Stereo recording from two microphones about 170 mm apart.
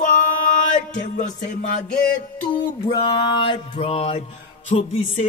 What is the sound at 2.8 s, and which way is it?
Music, 30° left (ahead or behind).